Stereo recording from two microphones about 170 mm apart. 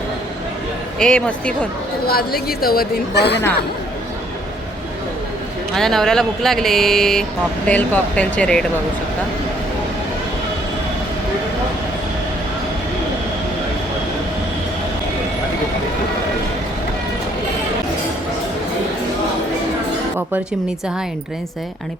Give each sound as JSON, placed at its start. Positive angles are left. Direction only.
{"t": 0.9, "sound": "speech", "side_deg": 5}
{"t": 2.0, "sound": "a woman's voice", "side_deg": 65}
{"t": 5.7, "sound": "speech", "side_deg": 0}